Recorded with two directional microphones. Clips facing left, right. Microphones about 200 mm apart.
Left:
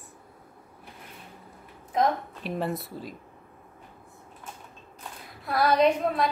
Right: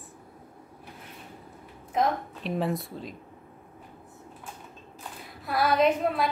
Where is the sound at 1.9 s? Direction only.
Centre (ahead or behind).